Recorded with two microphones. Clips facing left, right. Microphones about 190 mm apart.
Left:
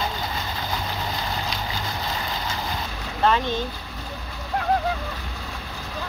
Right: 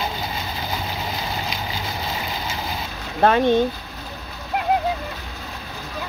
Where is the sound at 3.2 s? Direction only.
55° right (ahead or behind).